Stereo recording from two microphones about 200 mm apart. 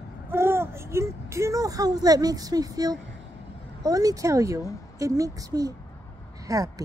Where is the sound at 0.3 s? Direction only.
10° right (ahead or behind).